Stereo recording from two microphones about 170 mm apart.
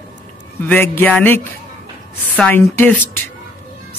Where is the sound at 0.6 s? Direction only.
10° left (ahead or behind).